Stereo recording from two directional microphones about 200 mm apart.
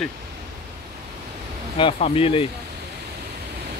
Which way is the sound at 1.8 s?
30° left (ahead or behind).